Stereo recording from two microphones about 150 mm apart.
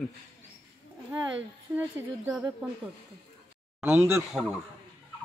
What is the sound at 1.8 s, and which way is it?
Speech, 5° right (ahead or behind).